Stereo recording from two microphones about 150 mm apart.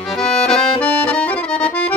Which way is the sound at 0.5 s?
5° left (ahead or behind).